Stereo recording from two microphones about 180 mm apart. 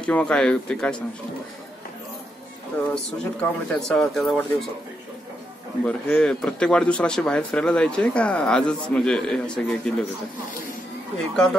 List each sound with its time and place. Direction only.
0.0 s speech: 5° left (ahead or behind)
2.9 s speech: 5° left (ahead or behind)
5.9 s speech: 5° left (ahead or behind)
11.1 s speech: centre (ahead or behind)